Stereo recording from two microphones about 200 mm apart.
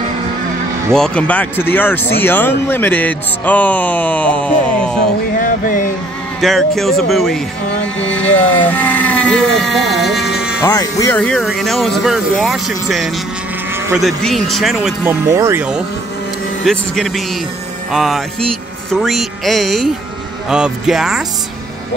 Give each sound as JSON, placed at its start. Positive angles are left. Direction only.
{"t": 0.9, "sound": "speech", "side_deg": 5}
{"t": 5.4, "sound": "speech", "side_deg": 45}
{"t": 6.4, "sound": "speech", "side_deg": 0}
{"t": 10.6, "sound": "speech", "side_deg": 15}
{"t": 15.2, "sound": "speech", "side_deg": -15}